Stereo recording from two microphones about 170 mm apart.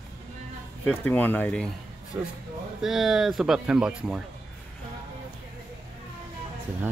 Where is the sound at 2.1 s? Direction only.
15° right (ahead or behind).